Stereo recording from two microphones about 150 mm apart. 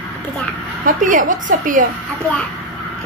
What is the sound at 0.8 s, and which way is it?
A woman's voice, 65° right (ahead or behind).